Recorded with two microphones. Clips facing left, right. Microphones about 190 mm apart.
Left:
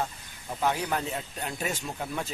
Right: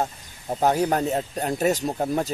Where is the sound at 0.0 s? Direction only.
40° right (ahead or behind).